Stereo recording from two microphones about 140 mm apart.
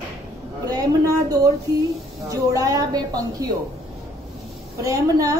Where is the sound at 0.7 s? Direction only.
25° right (ahead or behind).